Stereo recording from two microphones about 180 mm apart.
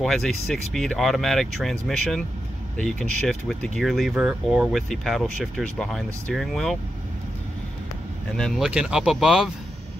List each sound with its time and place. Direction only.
0.0 s speech: centre (ahead or behind)
8.4 s speech: centre (ahead or behind)